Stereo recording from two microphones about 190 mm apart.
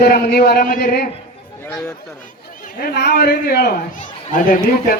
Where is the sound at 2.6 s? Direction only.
50° left (ahead or behind).